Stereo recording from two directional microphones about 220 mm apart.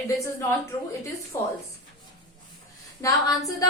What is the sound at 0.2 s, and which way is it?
A woman's voice, 15° left (ahead or behind).